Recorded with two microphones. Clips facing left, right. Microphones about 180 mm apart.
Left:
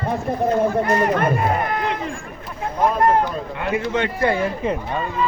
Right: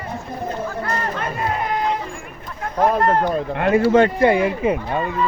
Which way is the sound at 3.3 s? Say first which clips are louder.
Right 6 dB; 60° right (ahead or behind).